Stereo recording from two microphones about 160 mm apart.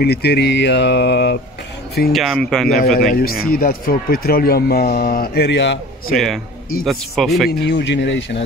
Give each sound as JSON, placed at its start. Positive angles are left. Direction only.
{"t": 0.0, "sound": "speech", "side_deg": 85}
{"t": 2.1, "sound": "speech", "side_deg": 0}
{"t": 3.1, "sound": "speech", "side_deg": 70}
{"t": 6.1, "sound": "speech", "side_deg": 0}
{"t": 7.4, "sound": "speech", "side_deg": 90}